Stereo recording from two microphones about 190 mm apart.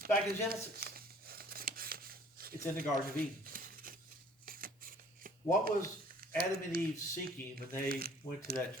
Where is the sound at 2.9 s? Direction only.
50° right (ahead or behind).